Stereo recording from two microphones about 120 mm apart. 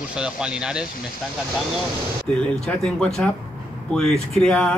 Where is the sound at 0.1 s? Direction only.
5° right (ahead or behind).